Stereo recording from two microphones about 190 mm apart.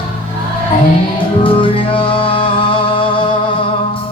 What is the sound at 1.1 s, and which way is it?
Music, 25° left (ahead or behind).